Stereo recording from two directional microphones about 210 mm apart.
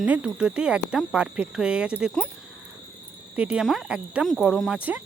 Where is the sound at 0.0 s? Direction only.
5° right (ahead or behind).